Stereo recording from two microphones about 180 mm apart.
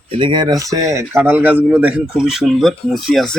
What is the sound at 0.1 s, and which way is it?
Speech, 25° right (ahead or behind).